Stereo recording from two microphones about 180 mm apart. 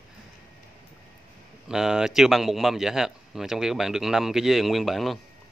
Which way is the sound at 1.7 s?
5° right (ahead or behind).